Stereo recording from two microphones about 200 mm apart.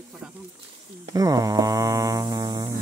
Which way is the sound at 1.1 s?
15° right (ahead or behind).